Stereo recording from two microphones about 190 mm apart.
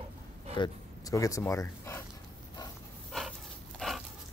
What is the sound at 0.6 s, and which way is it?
Speech, 20° left (ahead or behind).